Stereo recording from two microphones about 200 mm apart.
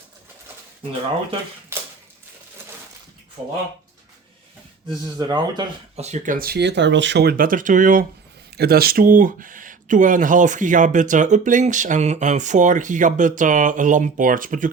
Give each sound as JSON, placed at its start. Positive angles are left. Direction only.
{"t": 1.7, "sound": "a sound", "side_deg": -10}
{"t": 5.1, "sound": "speech", "side_deg": -20}
{"t": 6.0, "sound": "speech", "side_deg": -35}